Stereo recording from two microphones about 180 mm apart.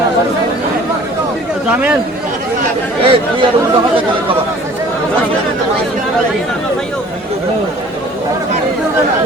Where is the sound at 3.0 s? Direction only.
30° right (ahead or behind).